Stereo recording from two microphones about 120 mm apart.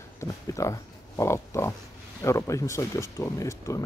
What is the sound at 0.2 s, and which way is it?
A man's voice, 25° left (ahead or behind).